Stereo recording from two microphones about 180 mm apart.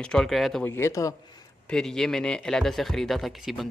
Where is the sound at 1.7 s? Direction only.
5° left (ahead or behind).